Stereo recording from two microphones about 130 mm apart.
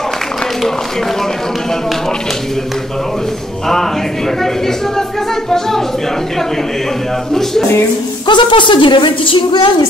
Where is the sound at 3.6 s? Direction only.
5° left (ahead or behind).